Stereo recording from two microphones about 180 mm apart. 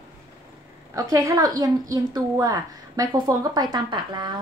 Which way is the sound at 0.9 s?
20° right (ahead or behind).